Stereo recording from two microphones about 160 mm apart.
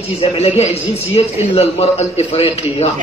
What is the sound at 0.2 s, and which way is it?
A man's voice, 40° left (ahead or behind).